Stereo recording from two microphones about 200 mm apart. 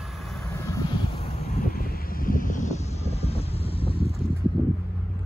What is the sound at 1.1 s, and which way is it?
Vehicle, 30° left (ahead or behind).